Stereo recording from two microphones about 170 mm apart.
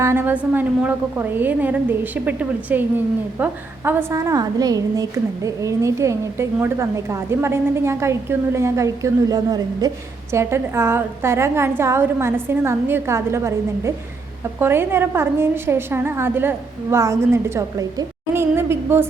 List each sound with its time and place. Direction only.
0.0 s a woman's voice: 15° right (ahead or behind)